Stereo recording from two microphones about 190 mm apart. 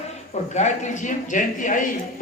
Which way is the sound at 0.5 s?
40° left (ahead or behind).